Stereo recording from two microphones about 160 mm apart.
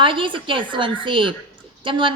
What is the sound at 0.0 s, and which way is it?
Speech, 30° right (ahead or behind).